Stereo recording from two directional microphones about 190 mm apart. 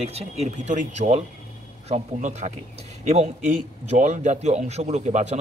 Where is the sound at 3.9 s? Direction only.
40° right (ahead or behind).